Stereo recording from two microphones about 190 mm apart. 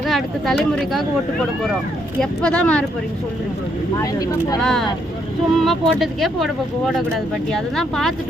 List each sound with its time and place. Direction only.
0.1 s speech: centre (ahead or behind)
2.4 s speech: 5° left (ahead or behind)
3.9 s speech: 20° left (ahead or behind)
4.6 s speech: centre (ahead or behind)